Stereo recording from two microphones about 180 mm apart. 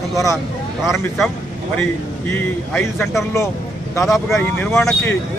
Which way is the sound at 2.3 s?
10° left (ahead or behind).